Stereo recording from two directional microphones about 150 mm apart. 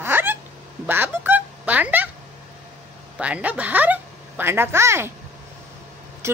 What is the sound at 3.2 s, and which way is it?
A woman's voice, 10° right (ahead or behind).